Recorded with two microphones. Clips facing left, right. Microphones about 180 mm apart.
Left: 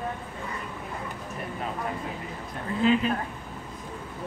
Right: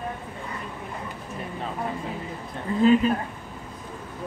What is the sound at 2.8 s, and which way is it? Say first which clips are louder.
Speech: right 5 dB; 40° right (ahead or behind).